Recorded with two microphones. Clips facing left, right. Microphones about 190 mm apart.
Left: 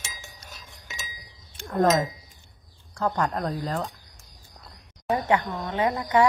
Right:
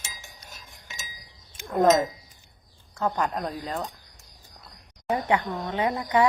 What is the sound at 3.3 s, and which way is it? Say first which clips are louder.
Speech: left 2 dB; centre (ahead or behind).